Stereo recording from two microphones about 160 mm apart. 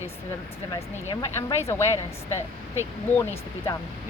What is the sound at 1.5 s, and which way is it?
Speech, 15° left (ahead or behind).